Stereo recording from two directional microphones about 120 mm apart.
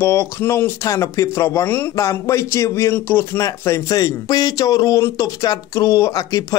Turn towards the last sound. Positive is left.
turn(degrees=30)  # may be behind; listen again after turning